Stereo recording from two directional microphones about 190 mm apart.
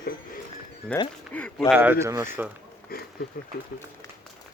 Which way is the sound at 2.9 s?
50° left (ahead or behind).